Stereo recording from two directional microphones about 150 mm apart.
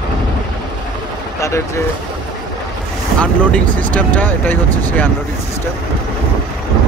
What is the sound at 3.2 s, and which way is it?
Speech, 10° left (ahead or behind).